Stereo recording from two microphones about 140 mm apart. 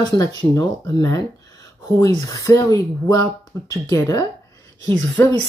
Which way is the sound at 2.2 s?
25° left (ahead or behind).